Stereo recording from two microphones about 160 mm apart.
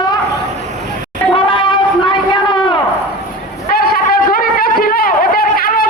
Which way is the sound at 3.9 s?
65° left (ahead or behind).